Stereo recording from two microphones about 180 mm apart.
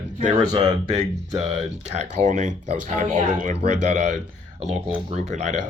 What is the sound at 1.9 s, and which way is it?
Speech, 40° right (ahead or behind).